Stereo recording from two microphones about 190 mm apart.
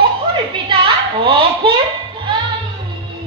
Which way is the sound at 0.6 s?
25° right (ahead or behind).